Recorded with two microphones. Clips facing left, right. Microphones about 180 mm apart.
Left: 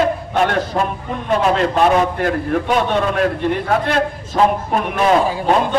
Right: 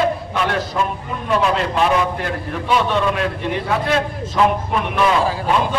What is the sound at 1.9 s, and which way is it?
A man's voice, 45° left (ahead or behind).